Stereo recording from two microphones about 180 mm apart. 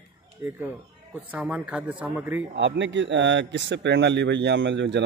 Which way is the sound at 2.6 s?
80° right.